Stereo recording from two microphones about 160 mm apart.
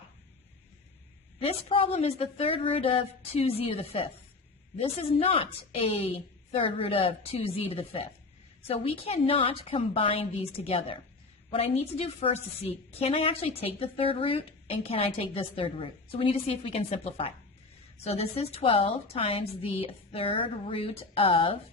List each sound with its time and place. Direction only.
1.4 s a woman's voice: 35° left (ahead or behind)